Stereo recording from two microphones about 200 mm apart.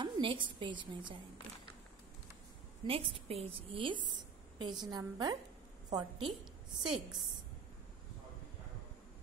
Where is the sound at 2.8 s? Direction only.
25° right (ahead or behind).